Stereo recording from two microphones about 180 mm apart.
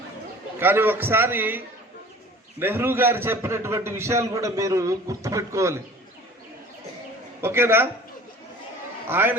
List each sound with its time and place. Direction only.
0.6 s a man's voice: 10° right (ahead or behind)
7.4 s a man's voice: 15° right (ahead or behind)
9.0 s a man's voice: 10° right (ahead or behind)